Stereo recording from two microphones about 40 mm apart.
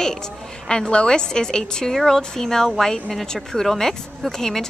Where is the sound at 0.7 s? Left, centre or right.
Left.